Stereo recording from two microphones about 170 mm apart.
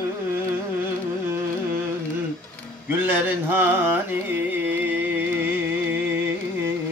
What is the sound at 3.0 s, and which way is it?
Carnatic music, 10° right (ahead or behind).